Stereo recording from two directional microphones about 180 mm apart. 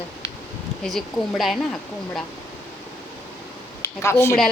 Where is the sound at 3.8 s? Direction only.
15° left (ahead or behind).